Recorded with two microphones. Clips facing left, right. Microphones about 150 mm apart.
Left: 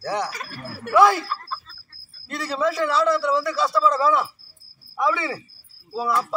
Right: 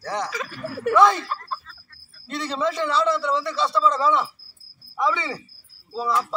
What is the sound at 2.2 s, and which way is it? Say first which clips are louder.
A man's voice: left 1 dB; 5° left (ahead or behind).